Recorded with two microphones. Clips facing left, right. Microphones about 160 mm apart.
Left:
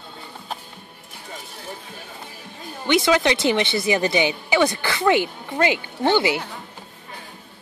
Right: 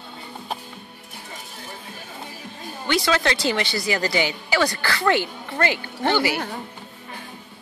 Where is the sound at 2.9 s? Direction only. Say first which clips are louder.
Left 4 dB; 20° left (ahead or behind).